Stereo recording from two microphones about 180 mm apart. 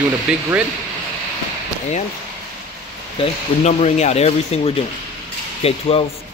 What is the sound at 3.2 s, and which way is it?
Speech, 40° left (ahead or behind).